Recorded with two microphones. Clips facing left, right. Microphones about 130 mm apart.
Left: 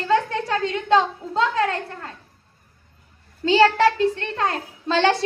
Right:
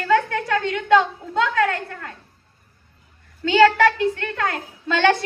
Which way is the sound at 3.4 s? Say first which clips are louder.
Right 1 dB; 30° left (ahead or behind).